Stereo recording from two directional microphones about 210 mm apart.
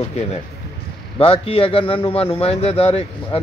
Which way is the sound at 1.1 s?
25° left (ahead or behind).